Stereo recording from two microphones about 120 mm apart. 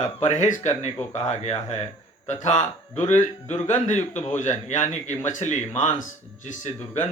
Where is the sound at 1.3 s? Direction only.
65° left (ahead or behind).